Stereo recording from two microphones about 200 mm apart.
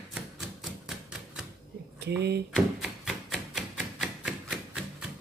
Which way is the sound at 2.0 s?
55° right (ahead or behind).